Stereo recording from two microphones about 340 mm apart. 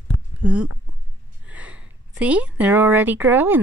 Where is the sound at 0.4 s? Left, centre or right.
Centre.